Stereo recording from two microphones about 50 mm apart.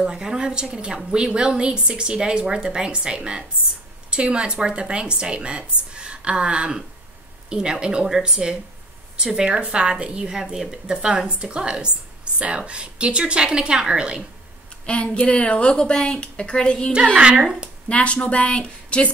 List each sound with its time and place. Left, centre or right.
0.0 s a woman's voice: centre
14.9 s speech: left
16.9 s a woman's voice: right
17.8 s speech: left